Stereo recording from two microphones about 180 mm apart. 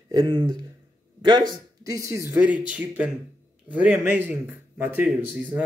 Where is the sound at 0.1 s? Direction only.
30° right (ahead or behind).